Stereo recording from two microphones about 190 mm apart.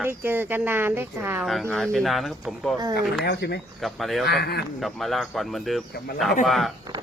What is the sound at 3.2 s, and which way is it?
Speech, 60° left (ahead or behind).